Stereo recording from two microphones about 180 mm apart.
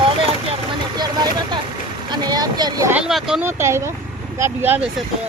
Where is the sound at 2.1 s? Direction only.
20° right (ahead or behind).